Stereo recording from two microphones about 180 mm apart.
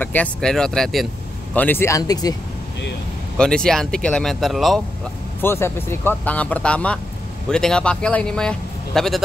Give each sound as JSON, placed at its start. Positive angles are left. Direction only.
{"t": 0.0, "sound": "a man's voice", "side_deg": 10}
{"t": 3.3, "sound": "a man's voice", "side_deg": 5}
{"t": 5.4, "sound": "a man's voice", "side_deg": 10}